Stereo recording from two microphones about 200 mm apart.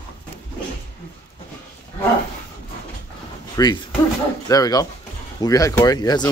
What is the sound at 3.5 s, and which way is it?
Speech, 20° left (ahead or behind).